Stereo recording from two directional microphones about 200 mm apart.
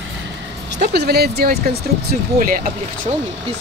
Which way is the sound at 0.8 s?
55° right (ahead or behind).